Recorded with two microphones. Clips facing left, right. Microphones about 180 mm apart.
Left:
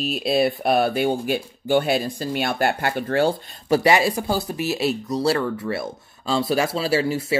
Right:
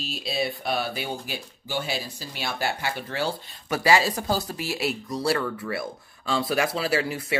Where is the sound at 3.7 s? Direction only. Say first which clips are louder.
Left 4 dB; 25° left (ahead or behind).